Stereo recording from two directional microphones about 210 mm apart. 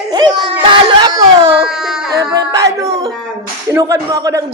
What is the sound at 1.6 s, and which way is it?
Baby cry, centre (ahead or behind).